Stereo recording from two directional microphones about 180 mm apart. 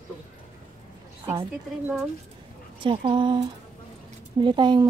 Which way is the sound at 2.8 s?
30° right (ahead or behind).